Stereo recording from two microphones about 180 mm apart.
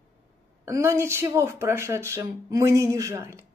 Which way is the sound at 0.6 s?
15° right (ahead or behind).